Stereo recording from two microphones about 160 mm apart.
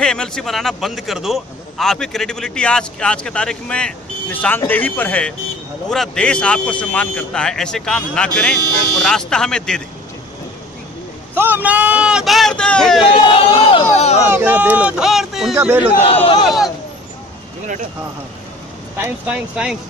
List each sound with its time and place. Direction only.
0.0 s a man's voice: 5° left (ahead or behind)
11.3 s a man's voice: 10° right (ahead or behind); by 13.0 s 5° left (ahead or behind)
13.1 s speech: 35° left (ahead or behind)
13.9 s a sound: 45° left (ahead or behind)
14.3 s a man's voice: 10° right (ahead or behind)
18.9 s speech: 10° right (ahead or behind)